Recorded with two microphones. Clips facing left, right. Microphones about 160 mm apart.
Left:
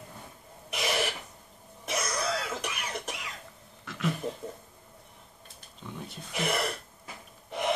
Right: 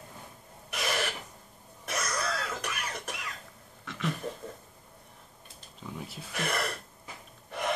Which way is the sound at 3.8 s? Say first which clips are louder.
Left 2 dB; centre (ahead or behind).